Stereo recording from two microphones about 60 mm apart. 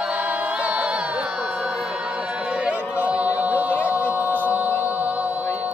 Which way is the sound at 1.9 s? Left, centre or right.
Centre.